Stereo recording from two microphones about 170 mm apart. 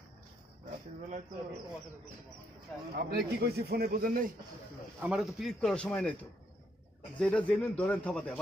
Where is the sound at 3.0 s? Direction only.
65° right (ahead or behind).